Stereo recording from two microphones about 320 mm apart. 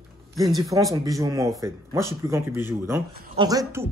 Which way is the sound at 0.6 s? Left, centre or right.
Centre.